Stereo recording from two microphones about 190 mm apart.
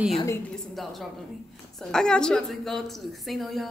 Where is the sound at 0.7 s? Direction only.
Centre (ahead or behind).